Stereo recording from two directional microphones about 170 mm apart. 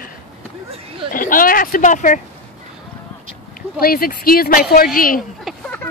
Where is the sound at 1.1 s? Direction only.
55° left (ahead or behind).